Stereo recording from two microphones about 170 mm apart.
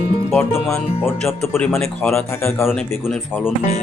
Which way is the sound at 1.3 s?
15° left (ahead or behind).